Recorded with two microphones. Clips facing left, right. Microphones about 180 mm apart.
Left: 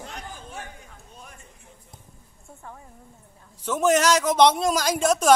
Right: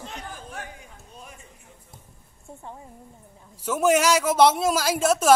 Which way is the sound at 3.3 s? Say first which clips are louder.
Even; 10° right (ahead or behind).